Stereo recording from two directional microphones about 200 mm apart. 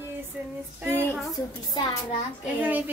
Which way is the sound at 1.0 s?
10° left (ahead or behind).